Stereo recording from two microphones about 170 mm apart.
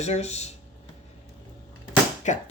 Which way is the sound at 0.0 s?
40° left (ahead or behind).